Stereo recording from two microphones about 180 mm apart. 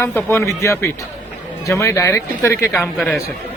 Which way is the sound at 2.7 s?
5° left (ahead or behind).